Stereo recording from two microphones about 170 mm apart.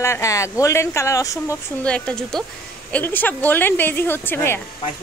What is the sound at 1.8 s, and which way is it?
Speech, 5° left (ahead or behind).